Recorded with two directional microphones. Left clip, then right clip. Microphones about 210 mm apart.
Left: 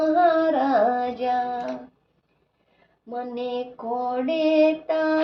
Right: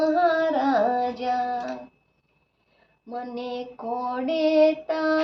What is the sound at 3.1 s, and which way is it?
Female singing, 10° right (ahead or behind).